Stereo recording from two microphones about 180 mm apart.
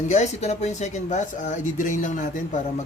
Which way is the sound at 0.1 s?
40° left (ahead or behind).